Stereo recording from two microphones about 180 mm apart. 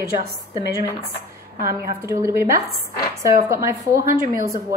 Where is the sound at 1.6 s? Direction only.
15° right (ahead or behind).